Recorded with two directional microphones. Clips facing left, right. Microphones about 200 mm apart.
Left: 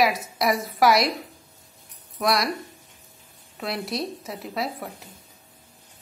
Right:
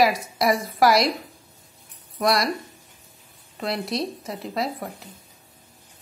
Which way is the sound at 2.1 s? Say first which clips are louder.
Right 2 dB; centre (ahead or behind).